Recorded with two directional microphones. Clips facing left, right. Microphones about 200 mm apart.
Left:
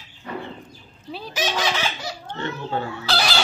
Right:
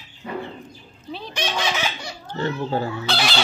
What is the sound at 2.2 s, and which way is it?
Speech, 35° right (ahead or behind).